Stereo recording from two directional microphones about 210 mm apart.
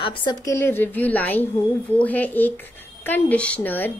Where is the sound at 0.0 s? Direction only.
20° left (ahead or behind).